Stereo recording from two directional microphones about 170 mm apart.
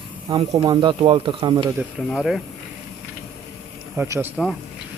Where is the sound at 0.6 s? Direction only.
25° right (ahead or behind).